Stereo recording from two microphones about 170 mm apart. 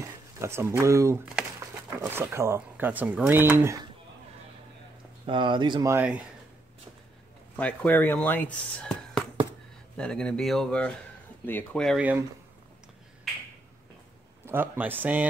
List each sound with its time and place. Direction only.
0.0 s speech: 15° right (ahead or behind)
5.2 s speech: 30° right (ahead or behind)
5.9 s speech: 5° right (ahead or behind)
7.5 s speech: 10° left (ahead or behind)
12.0 s speech: 10° right (ahead or behind)
14.4 s speech: 10° right (ahead or behind)